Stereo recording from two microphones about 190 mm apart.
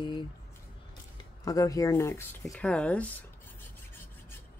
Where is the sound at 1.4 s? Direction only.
20° left (ahead or behind).